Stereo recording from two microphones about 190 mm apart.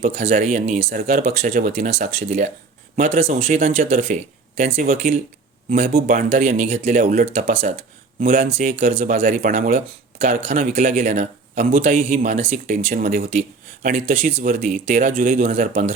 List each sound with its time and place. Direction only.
0.1 s speech: 35° right (ahead or behind)
0.9 s speech: 50° right (ahead or behind)